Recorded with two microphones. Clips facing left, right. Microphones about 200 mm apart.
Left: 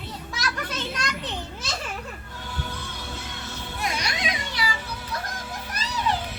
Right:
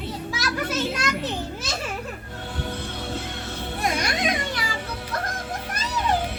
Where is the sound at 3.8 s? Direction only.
50° right (ahead or behind).